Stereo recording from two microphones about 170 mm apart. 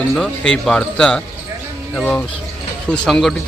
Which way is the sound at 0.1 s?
5° left (ahead or behind).